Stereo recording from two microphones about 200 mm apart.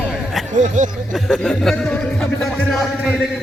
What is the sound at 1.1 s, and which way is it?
Speech, 5° left (ahead or behind).